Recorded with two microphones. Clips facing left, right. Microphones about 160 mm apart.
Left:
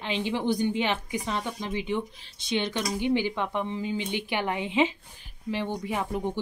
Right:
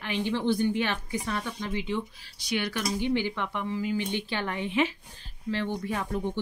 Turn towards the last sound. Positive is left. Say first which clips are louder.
# left 1 dB
turn(degrees=15)  # may be behind; listen again after turning